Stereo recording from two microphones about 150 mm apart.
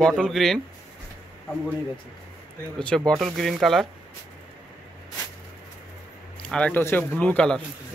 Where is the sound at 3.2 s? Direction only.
Centre (ahead or behind).